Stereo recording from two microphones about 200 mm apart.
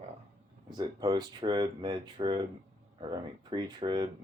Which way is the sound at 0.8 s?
20° right (ahead or behind).